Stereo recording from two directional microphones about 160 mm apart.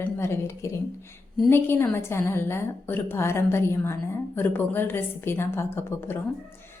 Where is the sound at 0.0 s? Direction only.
15° left (ahead or behind).